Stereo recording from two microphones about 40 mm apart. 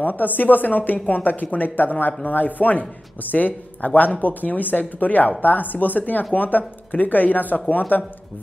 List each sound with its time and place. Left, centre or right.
0.0 s speech: left